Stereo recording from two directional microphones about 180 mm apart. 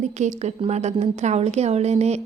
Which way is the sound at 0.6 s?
35° right (ahead or behind).